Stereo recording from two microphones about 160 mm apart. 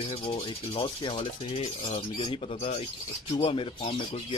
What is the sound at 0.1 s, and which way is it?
Speech, 35° left (ahead or behind).